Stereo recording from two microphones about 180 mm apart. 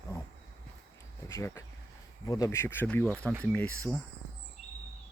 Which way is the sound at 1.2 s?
15° left (ahead or behind).